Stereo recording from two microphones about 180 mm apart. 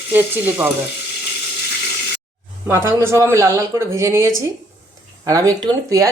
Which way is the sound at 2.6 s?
15° right (ahead or behind).